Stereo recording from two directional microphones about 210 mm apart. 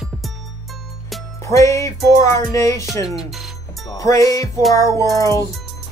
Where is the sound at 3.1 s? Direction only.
Centre (ahead or behind).